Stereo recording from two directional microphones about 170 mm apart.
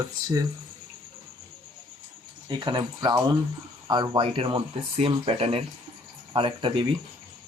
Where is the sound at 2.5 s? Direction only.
25° right (ahead or behind).